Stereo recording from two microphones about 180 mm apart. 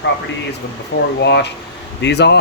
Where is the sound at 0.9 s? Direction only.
90° left.